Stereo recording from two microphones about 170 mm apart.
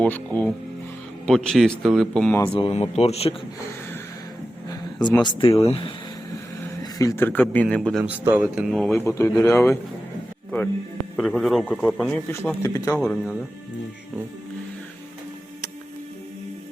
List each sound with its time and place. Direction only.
0.0 s a man's voice: 10° left (ahead or behind)
2.5 s speech: 30° left (ahead or behind)
4.7 s a sound: 25° left (ahead or behind)
5.2 s speech: 30° left (ahead or behind)
6.6 s a man's voice: 15° left (ahead or behind)
8.0 s speech: 10° right (ahead or behind)
9.0 s a man's voice: 15° left (ahead or behind)
11.2 s a man's voice: centre (ahead or behind); by 13.0 s 15° left (ahead or behind)
13.0 s speech: centre (ahead or behind)